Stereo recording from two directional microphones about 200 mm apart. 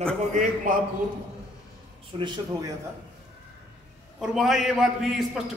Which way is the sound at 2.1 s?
20° right (ahead or behind).